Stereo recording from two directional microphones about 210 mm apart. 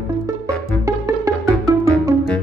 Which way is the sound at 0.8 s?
15° right (ahead or behind).